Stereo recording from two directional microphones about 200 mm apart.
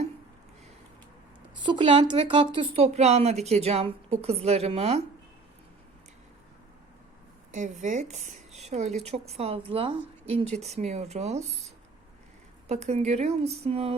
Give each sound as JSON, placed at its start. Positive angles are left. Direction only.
{"t": 1.6, "sound": "a woman's voice", "side_deg": -25}
{"t": 7.5, "sound": "a woman's voice", "side_deg": -40}